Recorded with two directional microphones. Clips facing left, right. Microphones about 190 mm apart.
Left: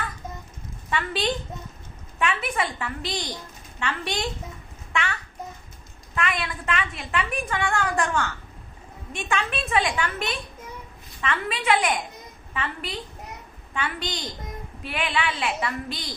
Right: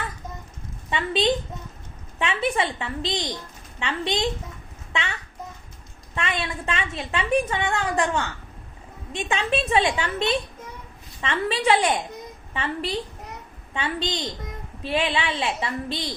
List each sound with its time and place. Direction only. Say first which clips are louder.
0.9 s a woman's voice: right 4 dB; 20° right (ahead or behind)
6.1 s a woman's voice: even; 25° right (ahead or behind)